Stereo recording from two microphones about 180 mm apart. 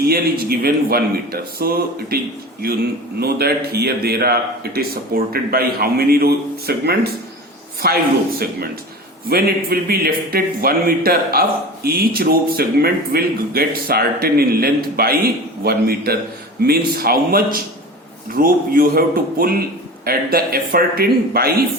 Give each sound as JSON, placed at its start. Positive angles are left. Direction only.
{"t": 0.0, "sound": "speech", "side_deg": -60}
{"t": 9.3, "sound": "speech", "side_deg": -60}